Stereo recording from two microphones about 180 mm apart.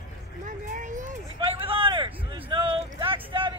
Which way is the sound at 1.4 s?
30° right (ahead or behind).